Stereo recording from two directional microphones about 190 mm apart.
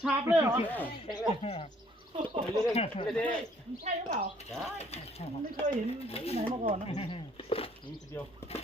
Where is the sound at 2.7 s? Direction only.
30° left (ahead or behind).